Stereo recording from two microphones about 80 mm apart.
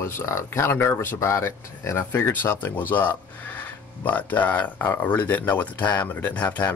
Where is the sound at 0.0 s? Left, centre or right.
Left.